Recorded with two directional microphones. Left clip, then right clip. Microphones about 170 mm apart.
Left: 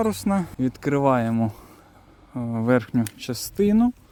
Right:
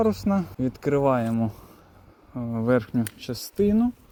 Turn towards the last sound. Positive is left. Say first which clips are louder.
# left 2 dB
turn(degrees=55)  # may be behind; listen again after turning